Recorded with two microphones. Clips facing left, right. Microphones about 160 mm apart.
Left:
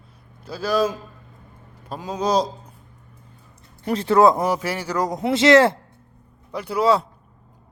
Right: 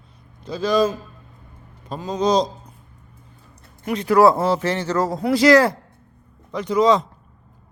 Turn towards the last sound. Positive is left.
turn(degrees=10)  # may be behind; listen again after turning